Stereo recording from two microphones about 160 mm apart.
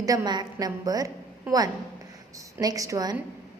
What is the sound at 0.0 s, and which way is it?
A woman's voice, 20° right (ahead or behind).